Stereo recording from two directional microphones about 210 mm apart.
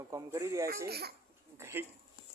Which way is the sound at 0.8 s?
50° right (ahead or behind).